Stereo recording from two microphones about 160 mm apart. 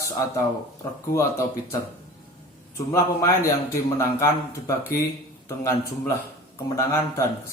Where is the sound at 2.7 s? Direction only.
20° left (ahead or behind).